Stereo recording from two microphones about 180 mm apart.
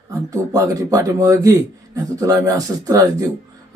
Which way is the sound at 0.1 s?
20° right (ahead or behind).